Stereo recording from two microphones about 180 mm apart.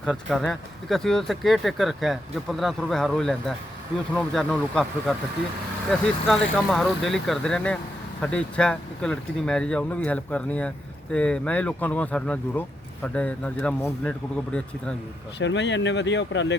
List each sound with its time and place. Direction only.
0.0 s speech: centre (ahead or behind)
15.4 s speech: 80° left